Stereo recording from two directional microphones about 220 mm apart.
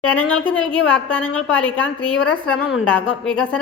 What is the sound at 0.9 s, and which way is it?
Speech, 5° left (ahead or behind).